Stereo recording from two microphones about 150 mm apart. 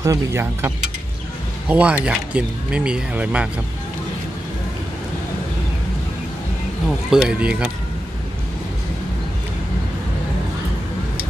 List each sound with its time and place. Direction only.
0.0 s speech: 20° right (ahead or behind)
7.1 s speech: 5° right (ahead or behind)